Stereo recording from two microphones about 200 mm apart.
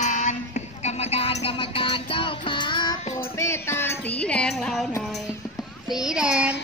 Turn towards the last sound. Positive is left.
turn(degrees=-5)  # may be behind; listen again after turning